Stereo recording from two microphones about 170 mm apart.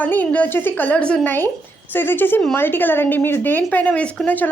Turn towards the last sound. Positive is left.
turn(degrees=10)  # may be behind; listen again after turning